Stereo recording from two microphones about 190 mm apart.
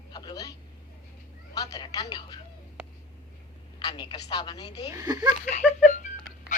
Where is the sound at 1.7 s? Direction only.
20° left (ahead or behind).